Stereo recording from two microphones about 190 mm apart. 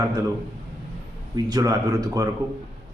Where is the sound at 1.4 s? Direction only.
20° right (ahead or behind).